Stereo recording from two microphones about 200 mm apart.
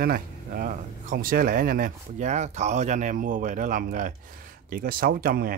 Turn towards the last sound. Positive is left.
turn(degrees=-50)  # may be behind; listen again after turning